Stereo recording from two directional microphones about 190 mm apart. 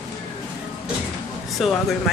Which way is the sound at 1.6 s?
Centre (ahead or behind).